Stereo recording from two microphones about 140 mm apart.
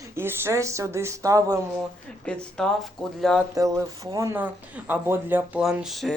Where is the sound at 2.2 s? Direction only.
5° left (ahead or behind).